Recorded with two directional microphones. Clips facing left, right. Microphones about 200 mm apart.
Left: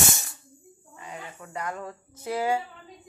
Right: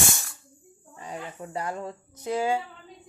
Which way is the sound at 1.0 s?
35° right (ahead or behind).